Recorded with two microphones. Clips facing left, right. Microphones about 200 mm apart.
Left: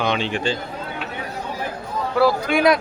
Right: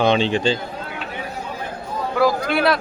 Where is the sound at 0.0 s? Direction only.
30° right (ahead or behind).